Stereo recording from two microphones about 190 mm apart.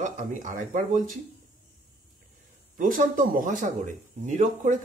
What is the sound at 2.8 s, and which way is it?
Speech, 45° right (ahead or behind).